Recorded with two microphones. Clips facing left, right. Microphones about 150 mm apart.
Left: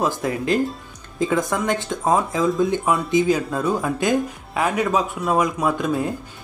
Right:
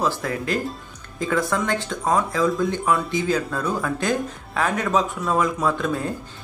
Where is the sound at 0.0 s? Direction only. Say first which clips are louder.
Left 2 dB; 20° left (ahead or behind).